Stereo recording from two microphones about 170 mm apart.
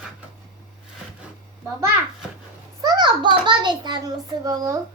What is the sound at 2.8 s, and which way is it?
A child's voice, 25° right (ahead or behind).